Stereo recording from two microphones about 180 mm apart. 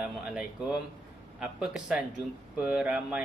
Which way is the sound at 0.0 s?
5° right (ahead or behind).